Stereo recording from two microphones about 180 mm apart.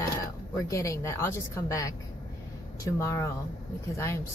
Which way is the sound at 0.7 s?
15° left (ahead or behind).